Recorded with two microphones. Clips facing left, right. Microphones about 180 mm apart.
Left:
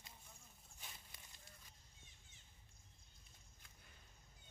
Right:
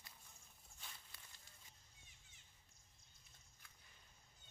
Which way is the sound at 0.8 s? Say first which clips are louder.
Left 1 dB; 15° left (ahead or behind).